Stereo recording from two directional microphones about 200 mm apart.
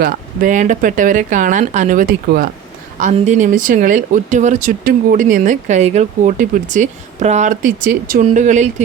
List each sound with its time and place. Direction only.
0.0 s speech: 40° right (ahead or behind)